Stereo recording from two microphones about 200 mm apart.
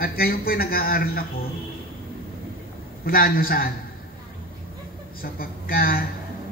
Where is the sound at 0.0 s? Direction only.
45° left (ahead or behind).